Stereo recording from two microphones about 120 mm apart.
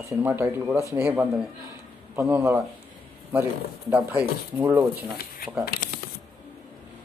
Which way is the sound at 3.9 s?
15° right (ahead or behind).